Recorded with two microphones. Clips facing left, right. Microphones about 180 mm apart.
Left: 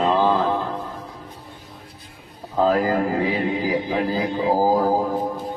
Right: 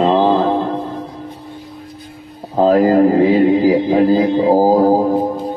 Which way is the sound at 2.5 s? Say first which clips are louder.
Right 8 dB; 35° right (ahead or behind).